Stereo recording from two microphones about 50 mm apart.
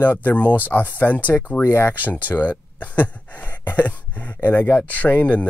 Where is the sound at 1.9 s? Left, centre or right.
Left.